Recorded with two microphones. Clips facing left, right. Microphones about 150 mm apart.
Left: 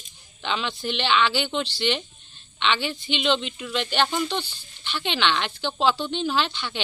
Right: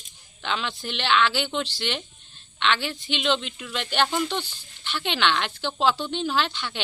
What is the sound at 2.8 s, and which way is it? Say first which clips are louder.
A woman's voice: left 1 dB; 5° right (ahead or behind).